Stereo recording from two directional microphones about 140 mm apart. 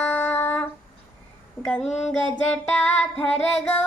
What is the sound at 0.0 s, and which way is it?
Humming, 10° left (ahead or behind).